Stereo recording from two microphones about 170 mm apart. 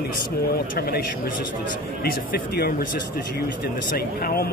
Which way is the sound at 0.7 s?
65° left (ahead or behind).